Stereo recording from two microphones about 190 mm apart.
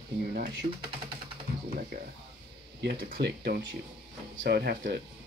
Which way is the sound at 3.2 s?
55° right (ahead or behind).